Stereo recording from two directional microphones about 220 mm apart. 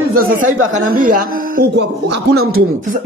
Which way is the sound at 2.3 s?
75° right (ahead or behind).